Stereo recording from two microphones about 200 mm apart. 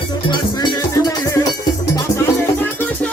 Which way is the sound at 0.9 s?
15° left (ahead or behind).